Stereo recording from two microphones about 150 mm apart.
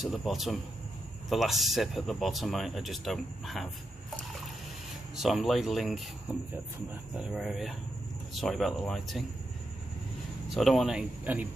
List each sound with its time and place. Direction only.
0.0 s speech: centre (ahead or behind)
5.1 s speech: centre (ahead or behind)
7.2 s speech: 5° right (ahead or behind)
10.5 s speech: centre (ahead or behind)